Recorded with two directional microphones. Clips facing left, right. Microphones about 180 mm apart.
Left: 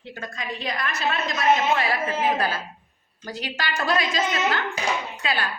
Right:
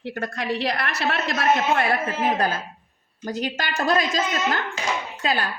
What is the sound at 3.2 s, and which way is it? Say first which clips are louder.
A woman's voice: right 4 dB; 45° right (ahead or behind).